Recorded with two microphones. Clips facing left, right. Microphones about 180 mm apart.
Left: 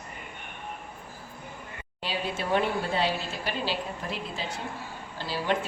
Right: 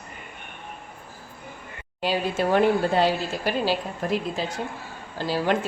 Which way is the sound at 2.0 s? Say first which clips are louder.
Right 8 dB; 45° right (ahead or behind).